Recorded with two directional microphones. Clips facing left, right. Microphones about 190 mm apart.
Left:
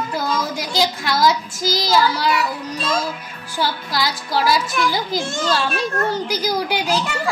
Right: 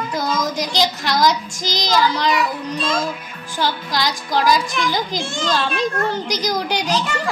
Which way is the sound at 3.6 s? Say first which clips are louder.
Right 1 dB; 10° left (ahead or behind).